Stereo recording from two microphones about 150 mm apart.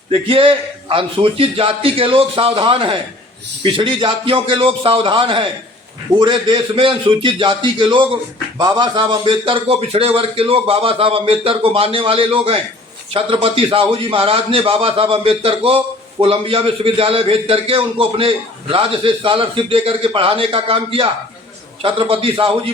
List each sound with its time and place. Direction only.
0.1 s a man's voice: 35° right (ahead or behind)